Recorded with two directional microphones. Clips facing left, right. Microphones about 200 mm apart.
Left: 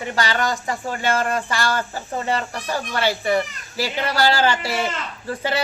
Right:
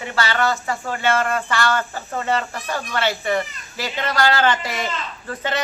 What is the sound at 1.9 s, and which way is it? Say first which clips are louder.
Speech: right 1 dB; 15° left (ahead or behind).